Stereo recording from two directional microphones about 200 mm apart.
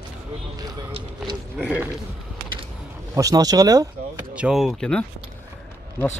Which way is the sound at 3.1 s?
15° right (ahead or behind).